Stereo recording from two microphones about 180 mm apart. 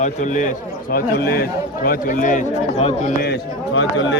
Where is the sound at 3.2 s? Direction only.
80° left.